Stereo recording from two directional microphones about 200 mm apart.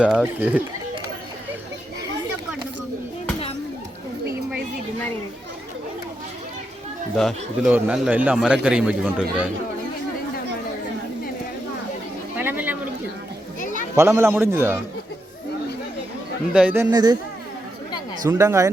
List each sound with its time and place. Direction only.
0.0 s a man's voice: 5° right (ahead or behind)
7.2 s a man's voice: centre (ahead or behind)
12.4 s a sound: 10° right (ahead or behind)
13.9 s a man's voice: 15° right (ahead or behind)
16.5 s a man's voice: 5° right (ahead or behind)
16.9 s speech: 20° right (ahead or behind)
18.3 s a man's voice: 10° right (ahead or behind)